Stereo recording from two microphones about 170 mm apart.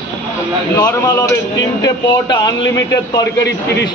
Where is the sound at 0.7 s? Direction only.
20° left (ahead or behind).